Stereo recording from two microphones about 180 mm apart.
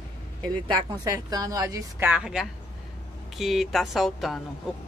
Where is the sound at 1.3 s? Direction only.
20° right (ahead or behind).